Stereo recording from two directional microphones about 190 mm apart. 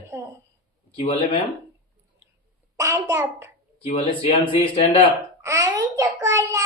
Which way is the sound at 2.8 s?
15° right (ahead or behind).